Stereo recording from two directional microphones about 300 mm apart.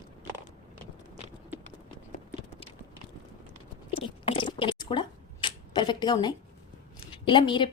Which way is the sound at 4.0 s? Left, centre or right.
Centre.